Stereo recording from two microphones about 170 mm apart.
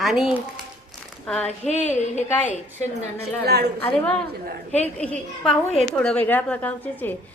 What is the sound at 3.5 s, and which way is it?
Speech, 70° right (ahead or behind).